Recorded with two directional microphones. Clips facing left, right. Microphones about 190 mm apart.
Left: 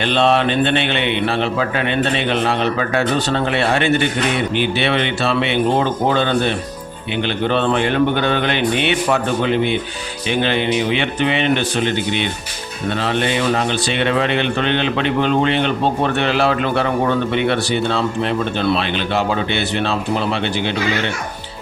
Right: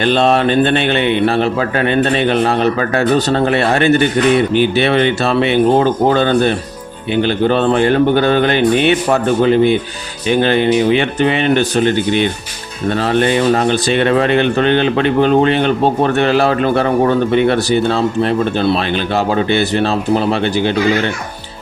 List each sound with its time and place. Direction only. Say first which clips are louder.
0.0 s a man's voice: right 3 dB; 45° right (ahead or behind)